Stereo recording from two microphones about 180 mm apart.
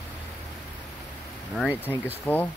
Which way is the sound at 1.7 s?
10° right (ahead or behind).